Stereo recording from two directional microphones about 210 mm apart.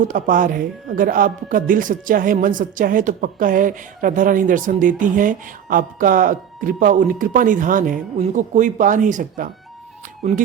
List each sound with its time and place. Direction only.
0.1 s speech: 40° right (ahead or behind)